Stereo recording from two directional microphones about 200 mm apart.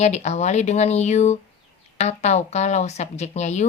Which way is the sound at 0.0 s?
35° left (ahead or behind).